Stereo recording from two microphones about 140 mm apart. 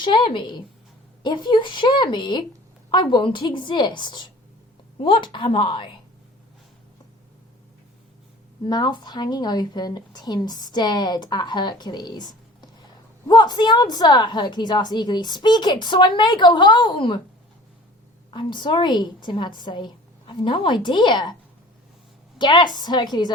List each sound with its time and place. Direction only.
0.0 s a woman's voice: 35° left (ahead or behind)
8.6 s a woman's voice: 30° left (ahead or behind)
18.3 s a woman's voice: 35° left (ahead or behind)
22.4 s a woman's voice: 30° left (ahead or behind)